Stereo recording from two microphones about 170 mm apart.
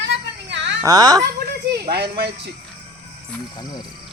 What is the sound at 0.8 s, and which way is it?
Speech, 20° right (ahead or behind).